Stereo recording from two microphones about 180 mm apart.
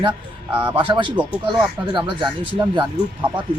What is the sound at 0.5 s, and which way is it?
Speech, 25° right (ahead or behind).